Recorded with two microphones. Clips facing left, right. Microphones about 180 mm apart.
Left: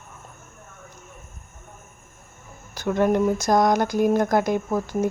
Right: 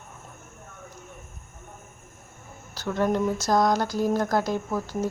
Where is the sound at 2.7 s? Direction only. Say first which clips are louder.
Left 4 dB; 15° left (ahead or behind).